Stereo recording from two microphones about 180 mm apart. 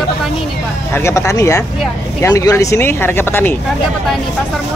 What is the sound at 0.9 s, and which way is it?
Speech, 15° left (ahead or behind).